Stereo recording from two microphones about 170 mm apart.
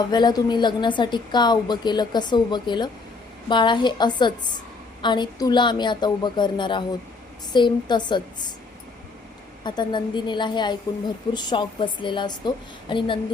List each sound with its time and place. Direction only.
0.1 s a woman's voice: 25° left (ahead or behind)
9.6 s a woman's voice: 25° left (ahead or behind)